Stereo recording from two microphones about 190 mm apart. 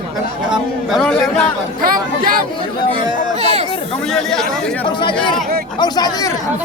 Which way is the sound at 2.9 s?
35° right (ahead or behind).